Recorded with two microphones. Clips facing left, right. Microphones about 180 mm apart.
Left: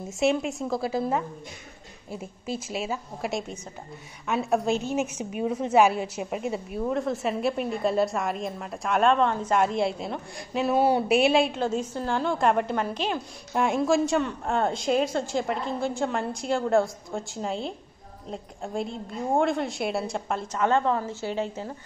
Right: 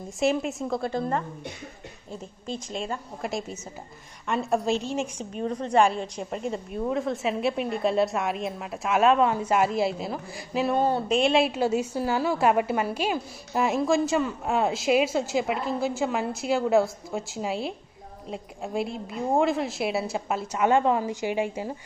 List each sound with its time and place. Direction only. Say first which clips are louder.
0.2 s a woman's voice: even; centre (ahead or behind)